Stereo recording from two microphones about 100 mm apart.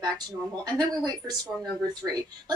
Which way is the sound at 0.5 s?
40° right (ahead or behind).